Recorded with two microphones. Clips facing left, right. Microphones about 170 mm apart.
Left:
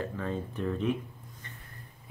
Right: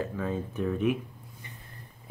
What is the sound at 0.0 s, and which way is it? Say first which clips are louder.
Speech: right 2 dB; 10° right (ahead or behind).